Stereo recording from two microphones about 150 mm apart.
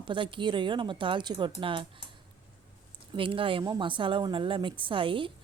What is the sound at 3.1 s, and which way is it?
Speech, 35° right (ahead or behind).